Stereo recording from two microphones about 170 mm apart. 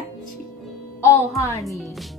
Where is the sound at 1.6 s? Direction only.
Centre (ahead or behind).